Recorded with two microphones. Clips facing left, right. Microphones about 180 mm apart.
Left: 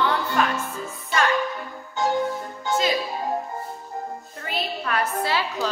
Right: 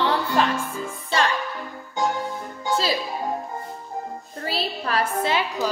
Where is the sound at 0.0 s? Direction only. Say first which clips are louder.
Right 1 dB; 30° right (ahead or behind).